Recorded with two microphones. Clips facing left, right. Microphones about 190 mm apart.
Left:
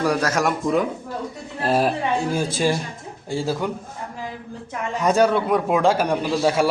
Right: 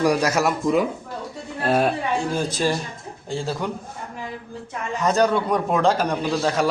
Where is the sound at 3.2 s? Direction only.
5° left (ahead or behind).